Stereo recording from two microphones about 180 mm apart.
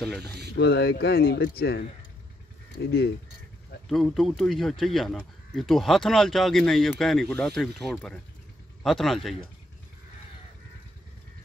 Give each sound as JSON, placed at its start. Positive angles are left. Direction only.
{"t": 0.6, "sound": "speech", "side_deg": 70}
{"t": 2.8, "sound": "speech", "side_deg": 85}
{"t": 3.9, "sound": "speech", "side_deg": 0}